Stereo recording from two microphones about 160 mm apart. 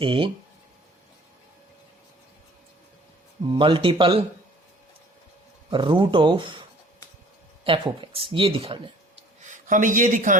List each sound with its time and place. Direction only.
0.0 s speech: 30° right (ahead or behind)
3.5 s speech: 30° right (ahead or behind)
5.7 s speech: 30° right (ahead or behind)
9.4 s a man's voice: 50° right (ahead or behind)